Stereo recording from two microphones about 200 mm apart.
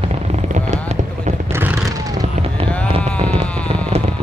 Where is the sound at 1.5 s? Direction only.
10° right (ahead or behind).